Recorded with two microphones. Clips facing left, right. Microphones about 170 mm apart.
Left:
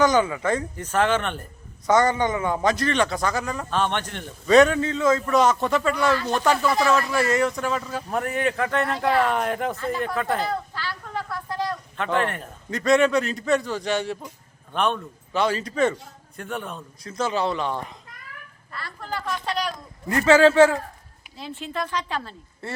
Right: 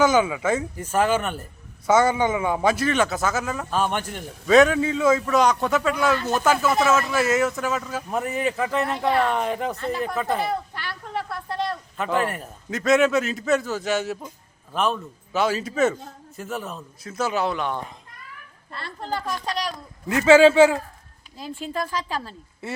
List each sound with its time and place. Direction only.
0.0 s a man's voice: 5° right (ahead or behind)
10.4 s a sound: 20° right (ahead or behind)
11.9 s speech: 5° right (ahead or behind)
18.7 s speech: 25° right (ahead or behind)
19.5 s a man's voice: 35° right (ahead or behind)
20.1 s a man's voice: 10° right (ahead or behind)
21.6 s a man's voice: 40° right (ahead or behind)
21.8 s a man's voice: 10° right (ahead or behind)